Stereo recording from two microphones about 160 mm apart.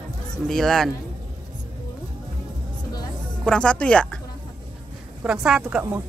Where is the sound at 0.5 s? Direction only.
Centre (ahead or behind).